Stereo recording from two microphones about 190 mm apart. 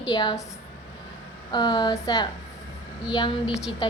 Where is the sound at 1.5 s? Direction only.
25° left (ahead or behind).